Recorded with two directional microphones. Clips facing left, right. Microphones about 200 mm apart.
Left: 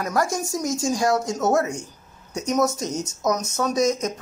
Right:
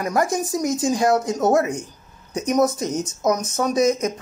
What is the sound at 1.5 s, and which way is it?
Speech, 60° right (ahead or behind).